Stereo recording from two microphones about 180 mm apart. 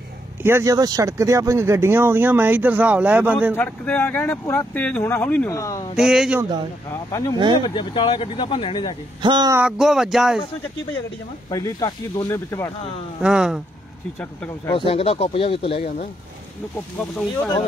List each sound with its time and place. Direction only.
0.4 s speech: 15° right (ahead or behind)
3.5 s speech: 10° left (ahead or behind)
5.9 s speech: 5° right (ahead or behind)
6.9 s speech: 20° left (ahead or behind)
9.2 s speech: 25° right (ahead or behind)
9.6 s speech: 5° right (ahead or behind)
11.5 s speech: 20° left (ahead or behind)
13.2 s speech: 5° right (ahead or behind)
14.7 s speech: 30° left (ahead or behind)